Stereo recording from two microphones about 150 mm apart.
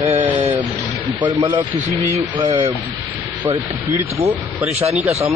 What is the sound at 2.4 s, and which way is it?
Speech, 50° right (ahead or behind).